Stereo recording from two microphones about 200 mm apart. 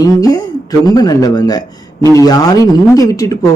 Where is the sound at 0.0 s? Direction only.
20° left (ahead or behind).